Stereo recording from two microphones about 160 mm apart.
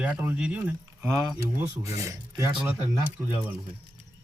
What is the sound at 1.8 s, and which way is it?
Speech, 20° right (ahead or behind).